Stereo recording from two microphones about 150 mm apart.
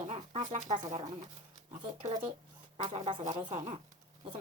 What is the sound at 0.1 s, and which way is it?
Speech, 50° right (ahead or behind).